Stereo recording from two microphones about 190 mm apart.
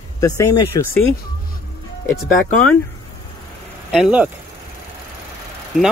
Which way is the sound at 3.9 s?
5° right (ahead or behind).